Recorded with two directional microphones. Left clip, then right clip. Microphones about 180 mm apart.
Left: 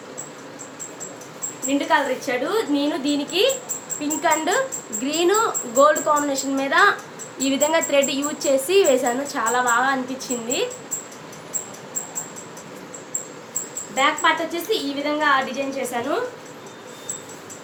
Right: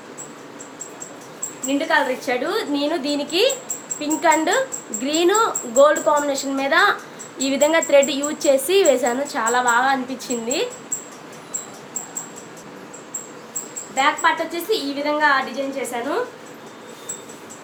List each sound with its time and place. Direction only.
1.6 s a woman's voice: 25° right (ahead or behind)
13.9 s a woman's voice: centre (ahead or behind)